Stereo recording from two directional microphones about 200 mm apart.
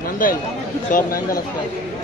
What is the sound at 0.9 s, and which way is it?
Speech, 40° left (ahead or behind).